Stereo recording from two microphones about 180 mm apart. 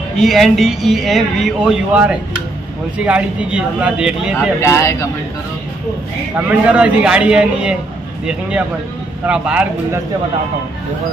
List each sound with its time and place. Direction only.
0.2 s a man's voice: centre (ahead or behind)
4.6 s speech: 15° left (ahead or behind)
6.3 s a man's voice: 5° right (ahead or behind)